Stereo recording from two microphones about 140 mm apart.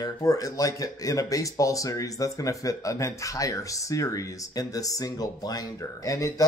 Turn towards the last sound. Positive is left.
turn(degrees=25)  # may be behind; listen again after turning